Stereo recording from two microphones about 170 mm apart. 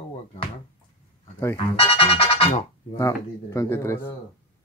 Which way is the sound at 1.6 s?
35° left (ahead or behind).